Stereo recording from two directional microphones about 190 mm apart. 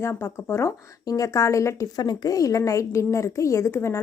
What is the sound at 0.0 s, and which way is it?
Speech, 15° left (ahead or behind).